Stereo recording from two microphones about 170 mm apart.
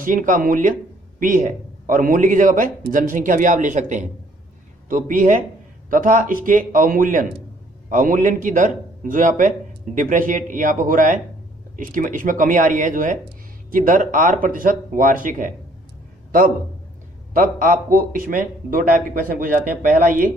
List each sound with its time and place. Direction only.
0.0 s a man's voice: 50° right (ahead or behind)
16.3 s a sound: 55° right (ahead or behind)
17.3 s a man's voice: 55° right (ahead or behind)